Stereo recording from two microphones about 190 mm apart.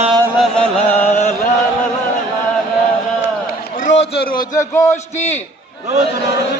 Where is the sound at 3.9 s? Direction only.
65° left (ahead or behind).